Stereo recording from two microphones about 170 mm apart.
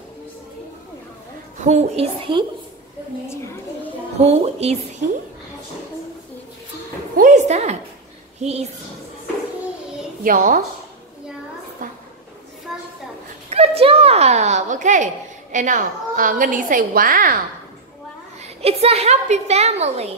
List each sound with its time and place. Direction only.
1.6 s a woman's voice: 45° right (ahead or behind)
4.2 s a woman's voice: 40° right (ahead or behind)
7.2 s a woman's voice: 45° right (ahead or behind)
10.2 s a woman's voice: 50° right (ahead or behind)
11.8 s a sound: 50° right (ahead or behind)
12.7 s a sound: centre (ahead or behind)
13.5 s a sound: 35° right (ahead or behind)
15.5 s a woman's voice: 50° right (ahead or behind)
18.4 s a woman's voice: 35° right (ahead or behind)